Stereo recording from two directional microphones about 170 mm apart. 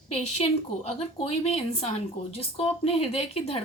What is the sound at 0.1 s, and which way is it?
A woman's voice, 40° left (ahead or behind).